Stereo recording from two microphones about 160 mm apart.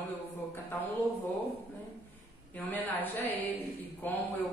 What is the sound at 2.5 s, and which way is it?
Speech, 10° left (ahead or behind).